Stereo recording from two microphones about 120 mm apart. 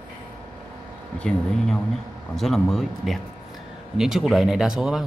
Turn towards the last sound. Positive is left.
turn(degrees=-5)  # may be behind; listen again after turning